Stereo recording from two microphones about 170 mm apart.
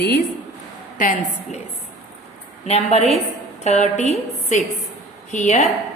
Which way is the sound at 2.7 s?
40° left (ahead or behind).